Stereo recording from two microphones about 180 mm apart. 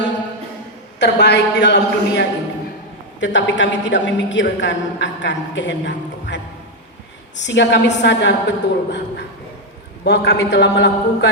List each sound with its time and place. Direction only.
0.9 s a woman's voice: 70° left (ahead or behind)
3.2 s a woman's voice: 90° left
7.4 s a woman's voice: 85° left